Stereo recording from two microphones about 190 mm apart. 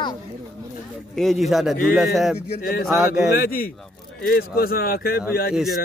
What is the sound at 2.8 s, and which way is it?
Speech, 15° right (ahead or behind).